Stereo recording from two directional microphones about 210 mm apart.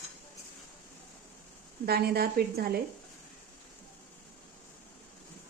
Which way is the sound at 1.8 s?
45° right (ahead or behind).